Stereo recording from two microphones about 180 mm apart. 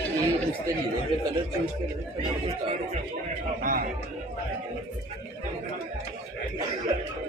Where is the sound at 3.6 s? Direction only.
50° right (ahead or behind).